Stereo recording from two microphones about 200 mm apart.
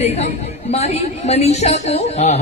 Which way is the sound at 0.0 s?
30° left (ahead or behind).